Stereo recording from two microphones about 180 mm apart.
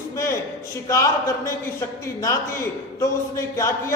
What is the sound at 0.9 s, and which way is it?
A man's voice, 15° left (ahead or behind).